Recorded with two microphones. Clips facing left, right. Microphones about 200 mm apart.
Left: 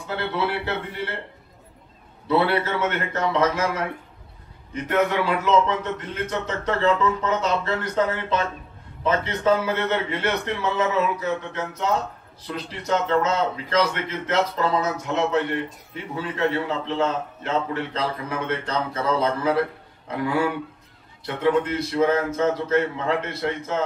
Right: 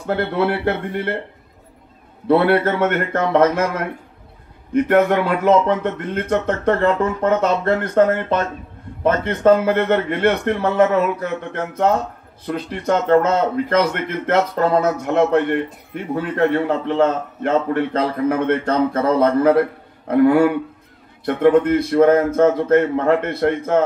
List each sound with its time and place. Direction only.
0.0 s a man's voice: 55° right (ahead or behind)
2.2 s a man's voice: 55° right (ahead or behind)